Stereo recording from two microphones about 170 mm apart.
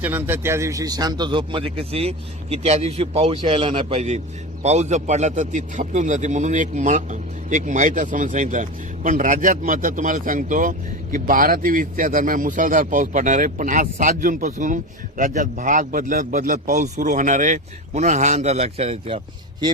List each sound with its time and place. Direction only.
0.0 s a man's voice: 10° right (ahead or behind); by 19.7 s 30° right (ahead or behind)